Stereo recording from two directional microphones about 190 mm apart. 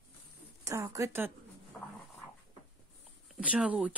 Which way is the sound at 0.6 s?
15° right (ahead or behind).